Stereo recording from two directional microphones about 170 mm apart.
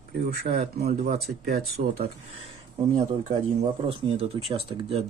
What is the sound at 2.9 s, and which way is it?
Speech, 45° right (ahead or behind).